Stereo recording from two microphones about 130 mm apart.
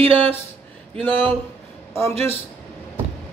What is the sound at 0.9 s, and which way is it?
Speech, 15° left (ahead or behind).